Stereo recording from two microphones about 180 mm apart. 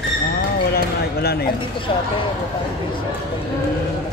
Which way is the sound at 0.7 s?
60° left (ahead or behind).